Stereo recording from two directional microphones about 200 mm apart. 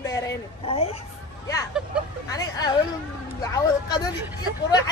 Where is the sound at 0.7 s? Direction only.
30° left (ahead or behind).